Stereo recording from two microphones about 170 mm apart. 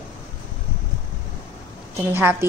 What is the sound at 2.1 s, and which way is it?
Speech, 15° right (ahead or behind).